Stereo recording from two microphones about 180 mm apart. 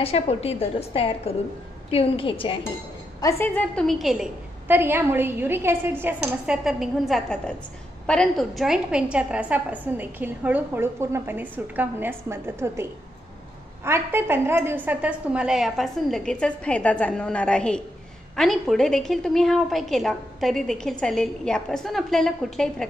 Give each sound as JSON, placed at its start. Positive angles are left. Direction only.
{"t": 0.0, "sound": "a woman's voice", "side_deg": 35}
{"t": 3.2, "sound": "a woman's voice", "side_deg": 15}
{"t": 13.8, "sound": "a woman's voice", "side_deg": -15}